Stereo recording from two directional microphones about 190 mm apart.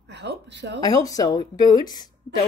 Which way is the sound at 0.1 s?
65° right (ahead or behind).